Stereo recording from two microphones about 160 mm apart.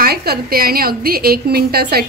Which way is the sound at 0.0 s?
80° right.